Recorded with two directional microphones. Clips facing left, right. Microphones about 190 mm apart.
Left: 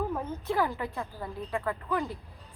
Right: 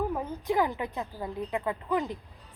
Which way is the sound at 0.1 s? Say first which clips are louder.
Right 2 dB; 15° right (ahead or behind).